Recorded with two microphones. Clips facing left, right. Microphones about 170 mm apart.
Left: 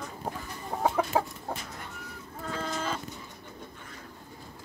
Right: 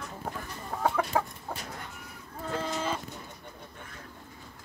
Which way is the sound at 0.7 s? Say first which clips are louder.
Left 1 dB; 15° left (ahead or behind).